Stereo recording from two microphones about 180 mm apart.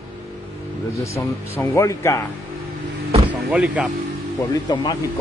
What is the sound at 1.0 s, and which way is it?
Speech, 15° left (ahead or behind).